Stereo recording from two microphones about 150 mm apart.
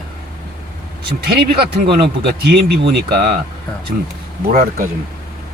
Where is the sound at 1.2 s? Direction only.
90° right.